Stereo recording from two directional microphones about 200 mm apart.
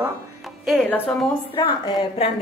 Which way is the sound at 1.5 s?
25° left (ahead or behind).